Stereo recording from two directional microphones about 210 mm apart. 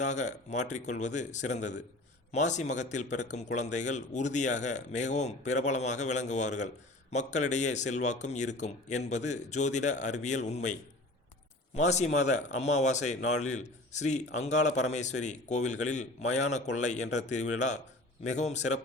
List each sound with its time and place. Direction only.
0.0 s a man's voice: 35° left (ahead or behind)